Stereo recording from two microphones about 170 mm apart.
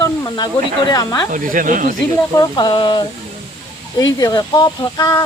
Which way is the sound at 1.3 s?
50° right (ahead or behind).